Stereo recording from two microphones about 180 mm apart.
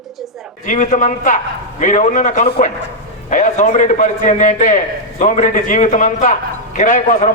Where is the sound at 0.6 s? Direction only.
45° left (ahead or behind).